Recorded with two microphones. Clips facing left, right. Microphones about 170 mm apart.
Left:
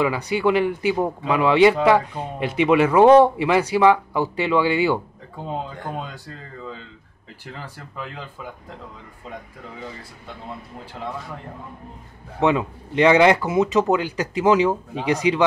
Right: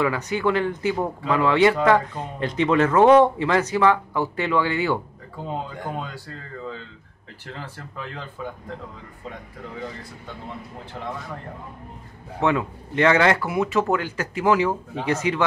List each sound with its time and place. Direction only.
0.0 s a man's voice: 15° left (ahead or behind)
12.4 s a man's voice: 20° left (ahead or behind)